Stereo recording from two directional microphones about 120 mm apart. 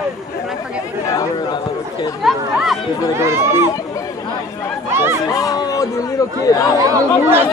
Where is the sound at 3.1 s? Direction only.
20° right (ahead or behind).